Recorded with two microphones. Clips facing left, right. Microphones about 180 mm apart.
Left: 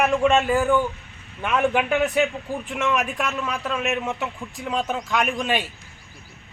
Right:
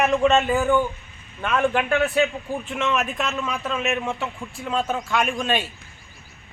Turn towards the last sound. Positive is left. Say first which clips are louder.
# even
turn(degrees=10)  # may be behind; listen again after turning